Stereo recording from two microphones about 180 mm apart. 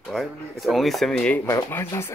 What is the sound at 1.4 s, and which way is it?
Speech, 15° left (ahead or behind).